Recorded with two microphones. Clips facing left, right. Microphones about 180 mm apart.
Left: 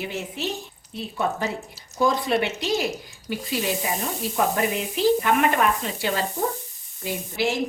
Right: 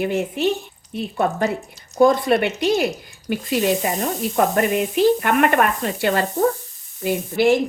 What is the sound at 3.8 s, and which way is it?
A woman's voice, 60° right (ahead or behind).